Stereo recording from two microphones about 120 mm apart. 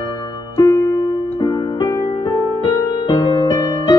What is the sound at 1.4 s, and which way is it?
Music, 35° left (ahead or behind).